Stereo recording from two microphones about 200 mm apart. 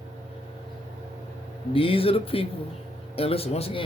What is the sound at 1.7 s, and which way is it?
A man's voice, 25° left (ahead or behind).